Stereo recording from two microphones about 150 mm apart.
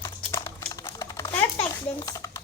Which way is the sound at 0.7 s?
25° left (ahead or behind).